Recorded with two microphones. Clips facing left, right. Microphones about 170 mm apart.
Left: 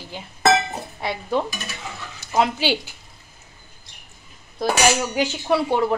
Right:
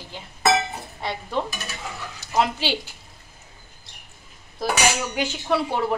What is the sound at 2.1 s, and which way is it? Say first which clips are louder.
Speech: left 2 dB; centre (ahead or behind).